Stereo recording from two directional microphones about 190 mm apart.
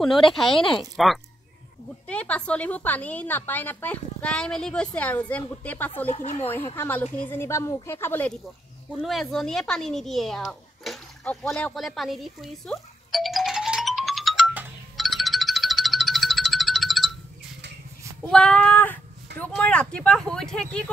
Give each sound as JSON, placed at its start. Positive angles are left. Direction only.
{"t": 0.0, "sound": "a woman's voice", "side_deg": 0}
{"t": 6.0, "sound": "speech", "side_deg": 35}
{"t": 6.4, "sound": "a woman's voice", "side_deg": 10}
{"t": 15.0, "sound": "music", "side_deg": 0}
{"t": 18.2, "sound": "speech", "side_deg": 5}